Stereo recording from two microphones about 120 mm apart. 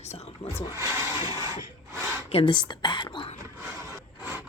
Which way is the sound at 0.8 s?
25° right (ahead or behind).